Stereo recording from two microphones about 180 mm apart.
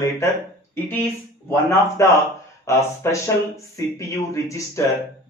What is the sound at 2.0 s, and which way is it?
Speech, 15° left (ahead or behind).